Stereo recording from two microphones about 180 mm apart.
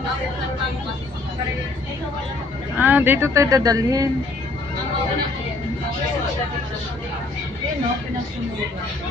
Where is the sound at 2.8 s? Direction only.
10° right (ahead or behind).